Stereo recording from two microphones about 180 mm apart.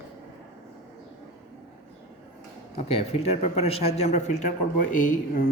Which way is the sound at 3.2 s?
35° left (ahead or behind).